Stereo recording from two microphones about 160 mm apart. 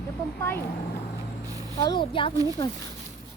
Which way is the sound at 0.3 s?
15° left (ahead or behind).